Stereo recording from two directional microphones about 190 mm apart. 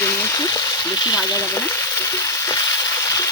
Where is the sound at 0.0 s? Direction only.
15° left (ahead or behind).